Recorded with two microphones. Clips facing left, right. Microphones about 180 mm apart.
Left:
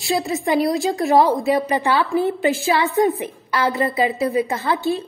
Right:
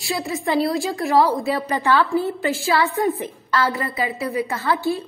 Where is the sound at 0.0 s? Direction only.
25° left (ahead or behind).